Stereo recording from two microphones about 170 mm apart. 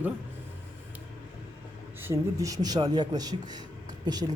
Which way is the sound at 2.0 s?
15° right (ahead or behind).